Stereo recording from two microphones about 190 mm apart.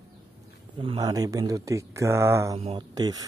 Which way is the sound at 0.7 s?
25° right (ahead or behind).